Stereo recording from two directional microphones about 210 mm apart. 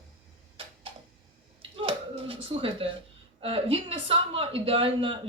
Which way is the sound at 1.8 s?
25° right (ahead or behind).